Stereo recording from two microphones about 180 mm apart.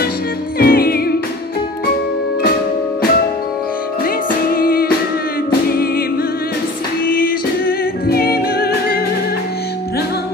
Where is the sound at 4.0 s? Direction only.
55° left (ahead or behind).